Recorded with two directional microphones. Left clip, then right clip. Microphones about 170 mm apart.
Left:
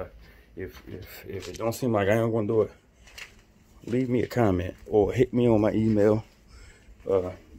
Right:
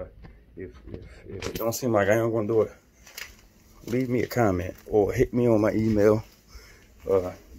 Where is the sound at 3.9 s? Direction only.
20° left (ahead or behind).